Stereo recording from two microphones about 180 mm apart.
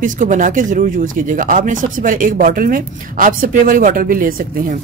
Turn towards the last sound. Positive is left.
turn(degrees=-50)  # may be behind; listen again after turning